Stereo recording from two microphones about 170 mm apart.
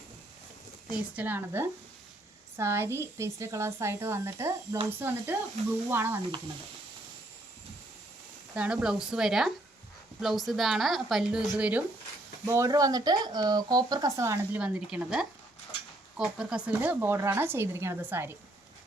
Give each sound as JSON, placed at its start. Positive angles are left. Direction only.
{"t": 1.1, "sound": "speech", "side_deg": -10}
{"t": 8.5, "sound": "a woman's voice", "side_deg": -5}
{"t": 12.5, "sound": "speech", "side_deg": -20}